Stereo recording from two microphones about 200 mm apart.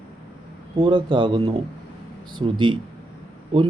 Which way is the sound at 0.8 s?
20° right (ahead or behind).